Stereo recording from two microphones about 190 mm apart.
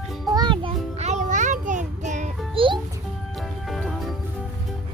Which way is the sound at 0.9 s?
35° right (ahead or behind).